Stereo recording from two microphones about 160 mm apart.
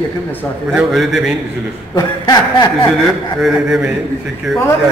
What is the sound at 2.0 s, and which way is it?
Chuckle, 25° left (ahead or behind).